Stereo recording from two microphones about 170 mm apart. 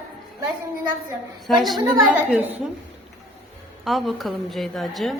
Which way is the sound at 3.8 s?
Centre (ahead or behind).